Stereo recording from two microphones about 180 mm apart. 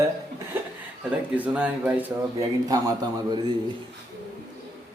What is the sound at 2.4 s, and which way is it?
A man's voice, 20° right (ahead or behind).